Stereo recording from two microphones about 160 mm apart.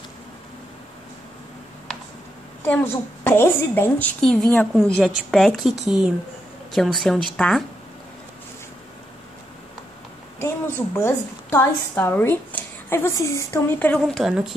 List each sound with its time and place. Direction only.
2.6 s a woman's voice: 15° left (ahead or behind)
11.0 s a woman's voice: 15° left (ahead or behind)
14.0 s a woman's voice: centre (ahead or behind)